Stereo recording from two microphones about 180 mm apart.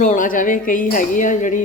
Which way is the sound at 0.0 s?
45° left (ahead or behind).